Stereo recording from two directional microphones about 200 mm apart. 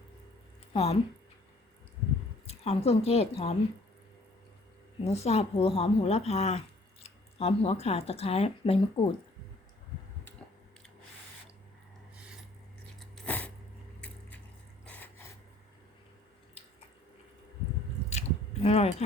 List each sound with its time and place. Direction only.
0.7 s speech: 30° left (ahead or behind)
2.5 s a woman's voice: 30° left (ahead or behind)
5.0 s a woman's voice: 30° left (ahead or behind)
13.0 s a sound: 5° left (ahead or behind)
14.8 s a sound: 10° left (ahead or behind)
18.6 s speech: 30° left (ahead or behind)